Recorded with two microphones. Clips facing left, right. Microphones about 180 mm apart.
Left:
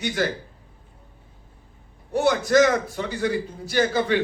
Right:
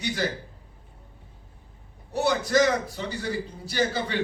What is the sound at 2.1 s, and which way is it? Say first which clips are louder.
A man's voice: left 4 dB; 50° left (ahead or behind).